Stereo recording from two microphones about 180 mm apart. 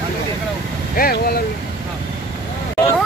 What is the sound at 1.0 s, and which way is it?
Speech, 55° left (ahead or behind).